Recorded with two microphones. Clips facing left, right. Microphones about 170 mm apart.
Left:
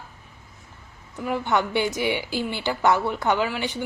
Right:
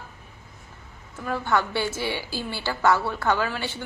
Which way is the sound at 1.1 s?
15° left (ahead or behind).